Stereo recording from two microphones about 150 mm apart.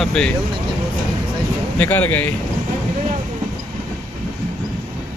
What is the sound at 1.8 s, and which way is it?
Speech, 10° left (ahead or behind).